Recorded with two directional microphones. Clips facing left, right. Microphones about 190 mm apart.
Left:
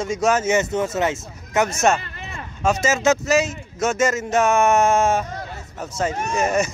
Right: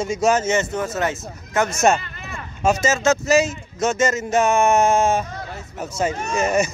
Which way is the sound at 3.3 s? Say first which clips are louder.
Right 2 dB; 5° left (ahead or behind).